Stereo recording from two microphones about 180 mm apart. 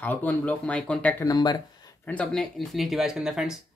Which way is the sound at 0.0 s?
10° left (ahead or behind).